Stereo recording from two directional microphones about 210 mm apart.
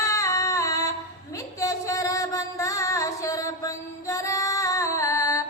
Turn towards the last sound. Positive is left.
turn(degrees=15)  # may be behind; listen again after turning